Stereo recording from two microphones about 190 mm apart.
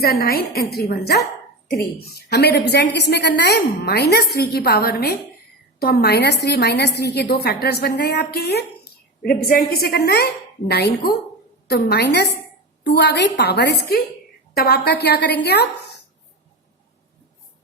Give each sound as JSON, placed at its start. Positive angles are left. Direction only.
{"t": 0.0, "sound": "a woman's voice", "side_deg": 55}
{"t": 2.3, "sound": "a woman's voice", "side_deg": 60}